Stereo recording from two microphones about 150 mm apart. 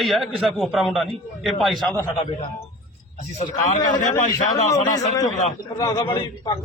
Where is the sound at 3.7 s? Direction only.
60° left (ahead or behind).